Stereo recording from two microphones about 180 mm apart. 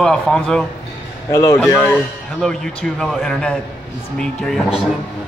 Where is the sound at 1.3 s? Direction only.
20° left (ahead or behind).